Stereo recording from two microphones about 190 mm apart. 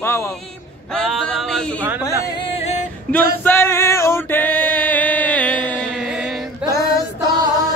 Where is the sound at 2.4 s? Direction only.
35° left (ahead or behind).